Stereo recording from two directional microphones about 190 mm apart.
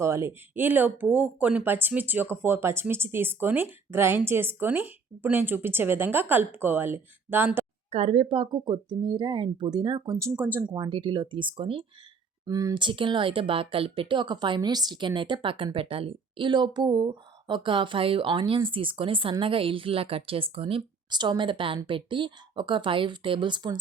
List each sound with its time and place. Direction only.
0.0 s speech: 15° right (ahead or behind)
7.9 s speech: 35° right (ahead or behind); by 10.7 s 10° right (ahead or behind)
10.7 s speech: 25° right (ahead or behind)